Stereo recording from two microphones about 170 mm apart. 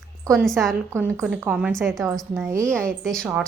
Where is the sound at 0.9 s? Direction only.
15° right (ahead or behind).